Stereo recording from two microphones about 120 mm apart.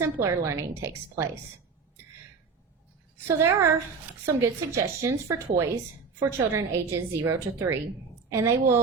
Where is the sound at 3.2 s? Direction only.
20° right (ahead or behind).